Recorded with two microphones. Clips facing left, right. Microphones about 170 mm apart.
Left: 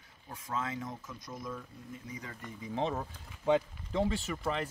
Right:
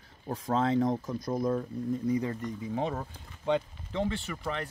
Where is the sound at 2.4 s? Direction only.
Centre (ahead or behind).